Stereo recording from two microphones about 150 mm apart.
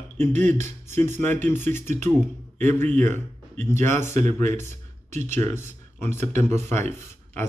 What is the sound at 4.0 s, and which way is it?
Speech, 50° right (ahead or behind).